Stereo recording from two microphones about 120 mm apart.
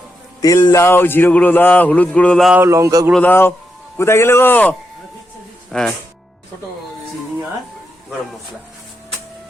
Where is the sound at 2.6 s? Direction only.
25° right (ahead or behind).